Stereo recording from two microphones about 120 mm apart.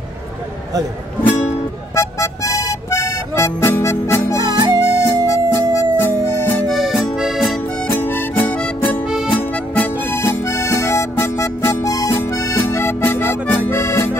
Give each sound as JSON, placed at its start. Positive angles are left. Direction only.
{"t": 2.0, "sound": "music", "side_deg": 20}
{"t": 4.4, "sound": "harmonica", "side_deg": -35}
{"t": 4.8, "sound": "music", "side_deg": 25}
{"t": 7.2, "sound": "music", "side_deg": -5}
{"t": 7.9, "sound": "harmonica", "side_deg": 15}
{"t": 9.1, "sound": "music", "side_deg": -5}
{"t": 9.4, "sound": "harmonica", "side_deg": 20}
{"t": 13.7, "sound": "accordion", "side_deg": 20}